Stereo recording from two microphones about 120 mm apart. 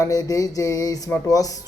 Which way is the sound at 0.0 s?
30° left (ahead or behind).